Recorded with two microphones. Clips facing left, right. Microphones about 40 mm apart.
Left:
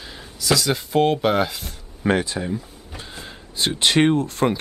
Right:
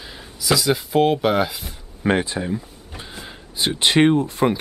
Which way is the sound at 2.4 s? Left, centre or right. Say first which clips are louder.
Right 1 dB; centre.